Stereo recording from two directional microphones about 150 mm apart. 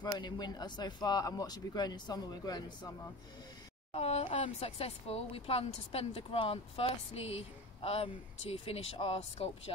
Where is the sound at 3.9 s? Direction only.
45° left (ahead or behind).